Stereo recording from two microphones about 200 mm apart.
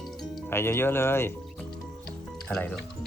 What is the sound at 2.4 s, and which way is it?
Speech, 5° left (ahead or behind).